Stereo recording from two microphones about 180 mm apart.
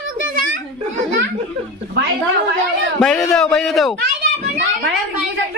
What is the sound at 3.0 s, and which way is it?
Speech, centre (ahead or behind).